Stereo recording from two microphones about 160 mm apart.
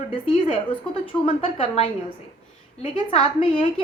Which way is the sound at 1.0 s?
35° left (ahead or behind).